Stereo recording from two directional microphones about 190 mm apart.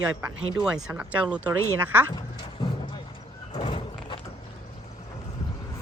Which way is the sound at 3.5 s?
30° left (ahead or behind).